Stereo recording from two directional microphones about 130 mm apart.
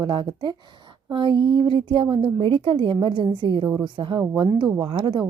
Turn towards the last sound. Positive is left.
turn(degrees=-40)  # may be behind; listen again after turning